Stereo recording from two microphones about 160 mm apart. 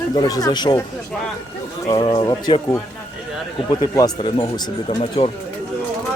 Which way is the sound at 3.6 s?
25° left (ahead or behind).